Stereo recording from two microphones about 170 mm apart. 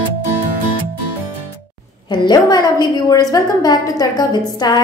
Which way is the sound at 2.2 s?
25° left (ahead or behind).